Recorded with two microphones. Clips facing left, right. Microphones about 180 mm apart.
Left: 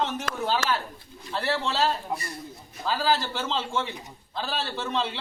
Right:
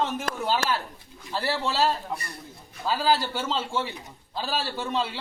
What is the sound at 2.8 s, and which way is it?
A man's voice, 10° right (ahead or behind).